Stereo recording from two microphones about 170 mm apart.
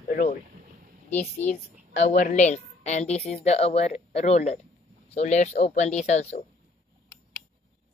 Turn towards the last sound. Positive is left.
turn(degrees=40)  # may be behind; listen again after turning